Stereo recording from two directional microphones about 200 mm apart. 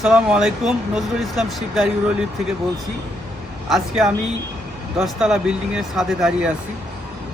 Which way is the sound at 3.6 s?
Centre (ahead or behind).